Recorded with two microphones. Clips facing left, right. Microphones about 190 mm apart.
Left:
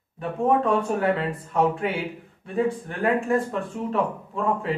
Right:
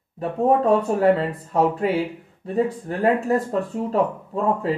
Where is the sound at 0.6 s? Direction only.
35° right (ahead or behind).